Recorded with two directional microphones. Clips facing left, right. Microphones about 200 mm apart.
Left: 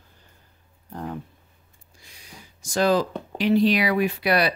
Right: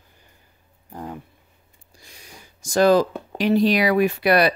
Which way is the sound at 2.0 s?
45° right (ahead or behind).